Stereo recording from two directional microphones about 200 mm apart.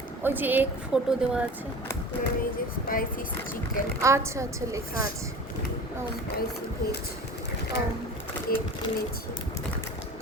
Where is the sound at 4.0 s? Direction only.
15° right (ahead or behind).